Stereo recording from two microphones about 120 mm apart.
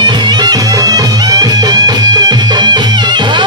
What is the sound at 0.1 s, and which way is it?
Music, 35° right (ahead or behind).